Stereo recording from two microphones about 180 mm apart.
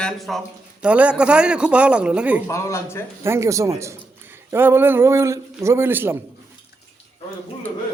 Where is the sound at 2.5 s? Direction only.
15° left (ahead or behind).